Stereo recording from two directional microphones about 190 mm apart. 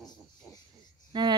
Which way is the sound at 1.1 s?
20° right (ahead or behind).